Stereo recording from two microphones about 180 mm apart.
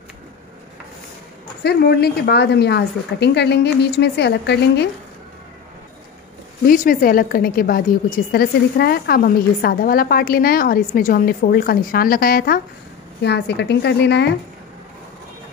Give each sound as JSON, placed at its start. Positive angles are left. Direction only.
{"t": 1.6, "sound": "speech", "side_deg": 65}
{"t": 6.6, "sound": "a woman's voice", "side_deg": 50}
{"t": 13.2, "sound": "speech", "side_deg": 70}